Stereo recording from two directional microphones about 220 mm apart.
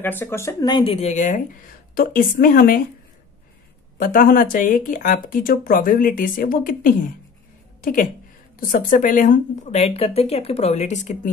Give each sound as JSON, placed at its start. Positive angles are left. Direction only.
{"t": 0.0, "sound": "speech", "side_deg": 10}
{"t": 4.0, "sound": "speech", "side_deg": 40}